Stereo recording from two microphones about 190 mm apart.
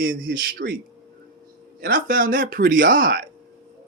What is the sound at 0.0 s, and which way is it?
Speech, 45° right (ahead or behind).